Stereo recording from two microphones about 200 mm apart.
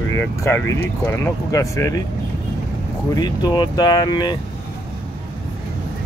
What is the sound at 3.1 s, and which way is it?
Speech, 20° left (ahead or behind).